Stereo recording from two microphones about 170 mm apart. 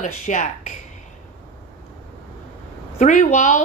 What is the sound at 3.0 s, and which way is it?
Speech, 45° left (ahead or behind).